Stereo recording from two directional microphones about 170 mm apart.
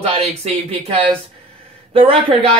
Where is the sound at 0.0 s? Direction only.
35° right (ahead or behind).